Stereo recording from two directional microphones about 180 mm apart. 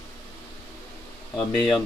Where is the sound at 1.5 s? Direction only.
Centre (ahead or behind).